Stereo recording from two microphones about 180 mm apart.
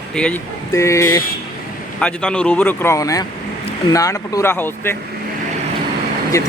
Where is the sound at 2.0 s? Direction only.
5° left (ahead or behind).